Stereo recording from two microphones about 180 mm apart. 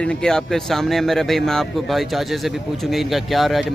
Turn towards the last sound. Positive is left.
turn(degrees=0)  # may be behind; listen again after turning